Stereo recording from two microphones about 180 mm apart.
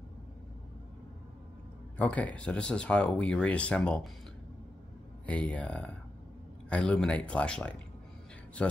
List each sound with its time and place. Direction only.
2.0 s speech: 10° left (ahead or behind)
5.2 s speech: 5° left (ahead or behind)